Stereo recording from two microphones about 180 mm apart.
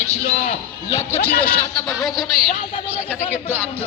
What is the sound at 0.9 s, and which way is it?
Speech, 15° left (ahead or behind).